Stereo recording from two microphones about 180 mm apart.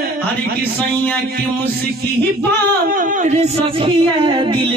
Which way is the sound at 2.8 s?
50° right (ahead or behind).